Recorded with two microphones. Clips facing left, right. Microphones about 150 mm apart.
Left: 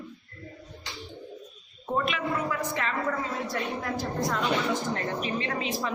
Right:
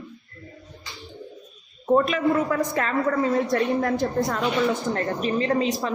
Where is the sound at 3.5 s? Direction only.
55° right (ahead or behind).